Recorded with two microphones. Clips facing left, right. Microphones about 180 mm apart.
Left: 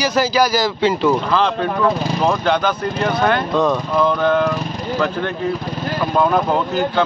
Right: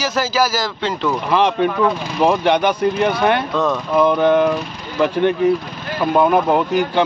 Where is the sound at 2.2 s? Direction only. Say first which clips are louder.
Right 4 dB; 15° right (ahead or behind).